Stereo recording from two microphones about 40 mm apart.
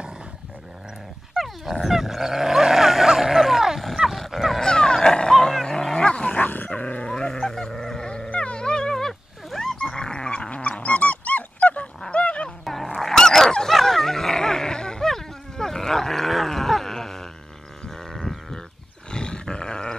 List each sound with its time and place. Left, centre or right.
1.3 s dog: centre
4.6 s a sound: centre
6.3 s dog: left
6.7 s dog: left; by 8.1 s centre
8.3 s dog: left
8.9 s a sound: centre
9.9 s dog: left
12.6 s dog: centre
17.8 s livestock: centre
18.1 s livestock: centre
19.0 s roar: left